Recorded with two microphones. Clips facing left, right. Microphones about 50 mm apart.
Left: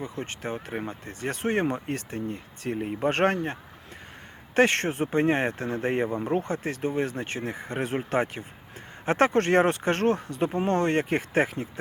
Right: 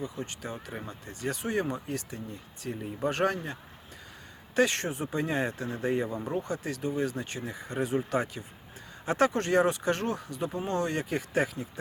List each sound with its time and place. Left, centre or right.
0.0 s speech: left